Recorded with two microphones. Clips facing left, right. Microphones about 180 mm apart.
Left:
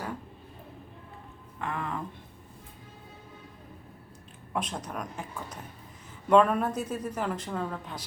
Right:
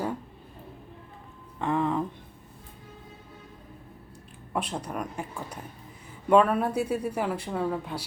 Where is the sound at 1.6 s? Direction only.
25° right (ahead or behind).